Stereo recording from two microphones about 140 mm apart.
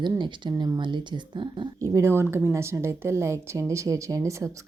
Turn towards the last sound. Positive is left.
turn(degrees=-20)  # may be behind; listen again after turning